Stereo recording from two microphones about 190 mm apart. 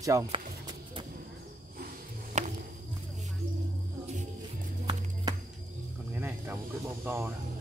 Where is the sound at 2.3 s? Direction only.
40° right (ahead or behind).